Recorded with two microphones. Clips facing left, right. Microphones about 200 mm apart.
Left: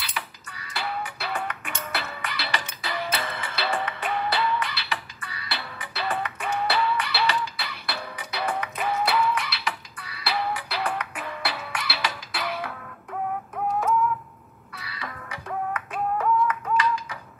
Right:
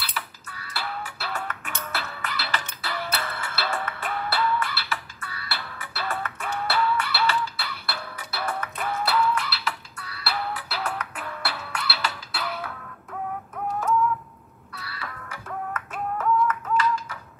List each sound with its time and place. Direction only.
0.1 s music: 15° left (ahead or behind)
15.0 s music: 15° left (ahead or behind)